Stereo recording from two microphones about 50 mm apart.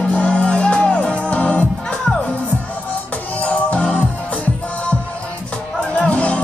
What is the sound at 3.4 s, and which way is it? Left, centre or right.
Music, left.